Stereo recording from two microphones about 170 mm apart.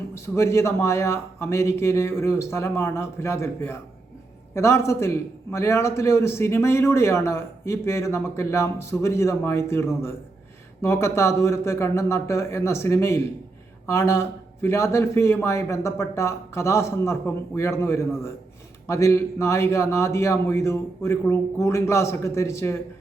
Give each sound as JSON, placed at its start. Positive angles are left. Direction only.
{"t": 0.1, "sound": "a man's voice", "side_deg": 15}